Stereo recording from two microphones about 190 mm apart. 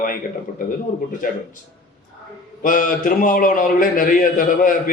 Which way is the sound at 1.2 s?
45° left (ahead or behind).